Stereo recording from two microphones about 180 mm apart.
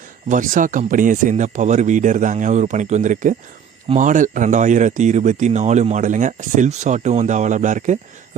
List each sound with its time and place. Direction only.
0.3 s speech: 45° right (ahead or behind)